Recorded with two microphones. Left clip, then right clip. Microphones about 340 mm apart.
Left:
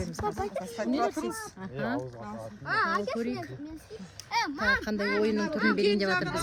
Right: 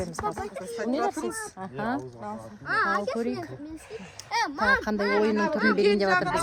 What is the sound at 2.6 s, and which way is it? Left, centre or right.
Speech, left.